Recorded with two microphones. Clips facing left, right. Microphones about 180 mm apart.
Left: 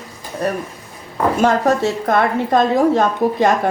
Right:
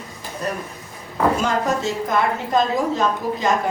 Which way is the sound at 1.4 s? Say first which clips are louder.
Left 6 dB; 65° left (ahead or behind).